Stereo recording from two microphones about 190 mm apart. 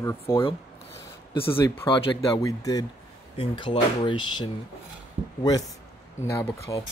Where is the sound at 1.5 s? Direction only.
10° left (ahead or behind).